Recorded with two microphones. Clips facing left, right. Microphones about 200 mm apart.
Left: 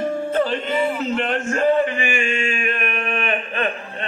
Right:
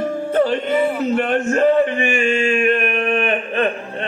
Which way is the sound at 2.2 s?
35° right (ahead or behind).